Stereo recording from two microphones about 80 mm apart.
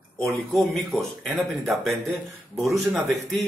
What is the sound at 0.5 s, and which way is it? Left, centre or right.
Speech, centre.